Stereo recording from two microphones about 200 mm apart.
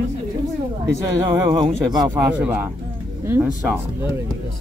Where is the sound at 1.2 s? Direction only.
20° right (ahead or behind).